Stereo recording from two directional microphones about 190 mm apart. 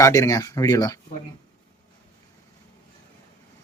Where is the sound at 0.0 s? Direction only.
20° left (ahead or behind).